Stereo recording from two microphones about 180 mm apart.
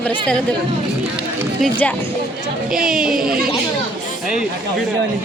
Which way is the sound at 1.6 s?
10° left (ahead or behind).